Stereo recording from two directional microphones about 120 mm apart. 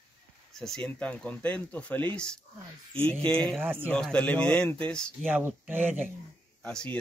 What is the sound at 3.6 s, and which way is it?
Speech, 15° right (ahead or behind).